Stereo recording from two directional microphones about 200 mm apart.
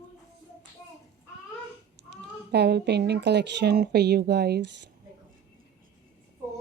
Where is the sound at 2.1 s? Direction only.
55° right (ahead or behind).